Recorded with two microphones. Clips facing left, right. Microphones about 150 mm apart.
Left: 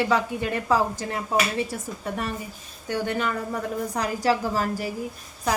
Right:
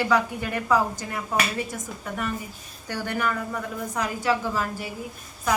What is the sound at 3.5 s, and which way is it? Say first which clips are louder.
A woman's voice: left 2 dB; 35° left (ahead or behind).